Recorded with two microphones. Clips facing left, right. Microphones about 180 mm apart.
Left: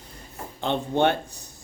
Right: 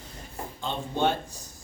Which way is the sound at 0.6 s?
65° left (ahead or behind).